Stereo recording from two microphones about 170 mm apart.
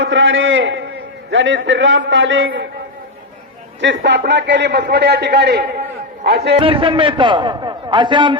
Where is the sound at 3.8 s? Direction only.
90° right; by 5.6 s 75° right (ahead or behind).